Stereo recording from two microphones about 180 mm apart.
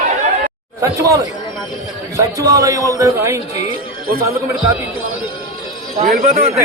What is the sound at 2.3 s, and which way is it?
Speech, 20° right (ahead or behind).